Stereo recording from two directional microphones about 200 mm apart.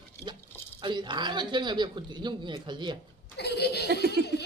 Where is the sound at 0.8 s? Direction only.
20° right (ahead or behind).